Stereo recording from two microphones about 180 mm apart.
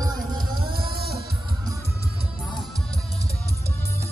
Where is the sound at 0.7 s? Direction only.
60° right (ahead or behind).